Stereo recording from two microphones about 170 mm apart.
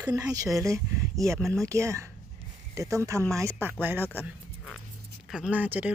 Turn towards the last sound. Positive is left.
turn(degrees=-10)  # may be behind; listen again after turning